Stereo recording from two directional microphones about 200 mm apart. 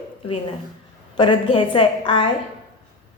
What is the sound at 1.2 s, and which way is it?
A woman's voice, 25° left (ahead or behind).